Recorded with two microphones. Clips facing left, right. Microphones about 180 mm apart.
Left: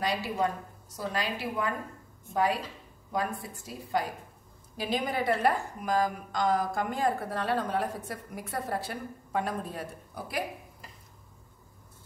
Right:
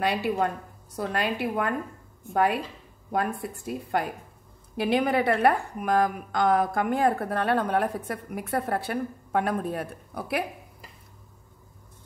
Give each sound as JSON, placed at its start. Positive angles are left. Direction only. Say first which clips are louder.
{"t": 0.0, "sound": "a woman's voice", "louder": "right 4 dB", "side_deg": -60}